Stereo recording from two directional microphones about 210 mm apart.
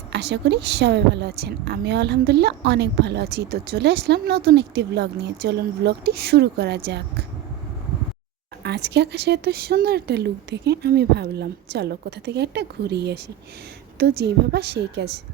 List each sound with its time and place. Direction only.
0.1 s a woman's voice: 55° right (ahead or behind)
8.6 s a woman's voice: 55° right (ahead or behind)